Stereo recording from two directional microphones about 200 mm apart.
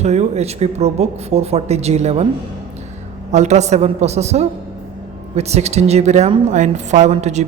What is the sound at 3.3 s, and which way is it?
A woman's voice, 35° right (ahead or behind).